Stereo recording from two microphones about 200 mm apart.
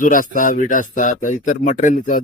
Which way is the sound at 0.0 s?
40° left (ahead or behind).